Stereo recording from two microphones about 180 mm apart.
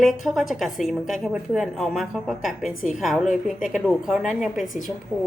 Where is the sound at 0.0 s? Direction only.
Centre (ahead or behind).